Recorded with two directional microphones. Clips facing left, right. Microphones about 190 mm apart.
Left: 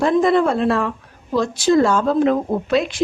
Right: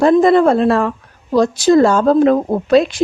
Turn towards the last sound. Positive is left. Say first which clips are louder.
# right 6 dB
turn(degrees=-40)  # may be behind; listen again after turning